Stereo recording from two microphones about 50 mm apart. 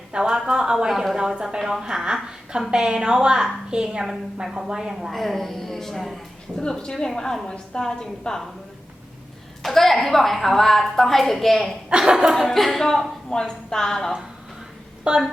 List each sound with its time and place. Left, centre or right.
0.1 s a woman's voice: centre
5.1 s a woman's voice: centre
6.6 s a woman's voice: centre
9.6 s a woman's voice: centre
11.9 s a woman's voice: centre
12.5 s a woman's voice: centre
15.1 s a woman's voice: right